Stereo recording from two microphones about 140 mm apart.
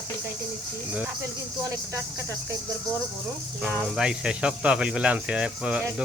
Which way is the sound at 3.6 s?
5° right (ahead or behind).